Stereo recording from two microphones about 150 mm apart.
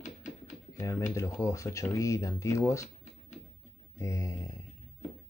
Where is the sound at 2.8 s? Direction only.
50° left (ahead or behind).